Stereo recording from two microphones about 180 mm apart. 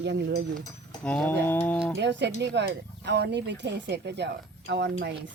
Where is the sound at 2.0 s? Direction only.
75° right (ahead or behind).